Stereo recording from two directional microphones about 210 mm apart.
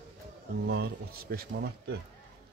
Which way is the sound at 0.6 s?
50° right (ahead or behind).